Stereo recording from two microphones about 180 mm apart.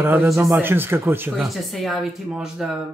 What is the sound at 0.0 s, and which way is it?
Speech, 15° right (ahead or behind).